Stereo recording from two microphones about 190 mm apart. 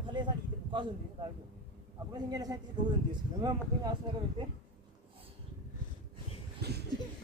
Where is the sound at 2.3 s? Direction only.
20° right (ahead or behind).